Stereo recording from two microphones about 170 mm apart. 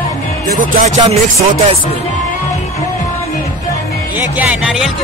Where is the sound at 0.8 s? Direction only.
40° right (ahead or behind).